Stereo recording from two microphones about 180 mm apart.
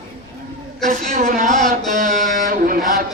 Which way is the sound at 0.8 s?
45° right (ahead or behind).